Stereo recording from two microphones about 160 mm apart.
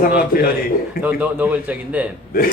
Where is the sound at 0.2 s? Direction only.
70° left (ahead or behind).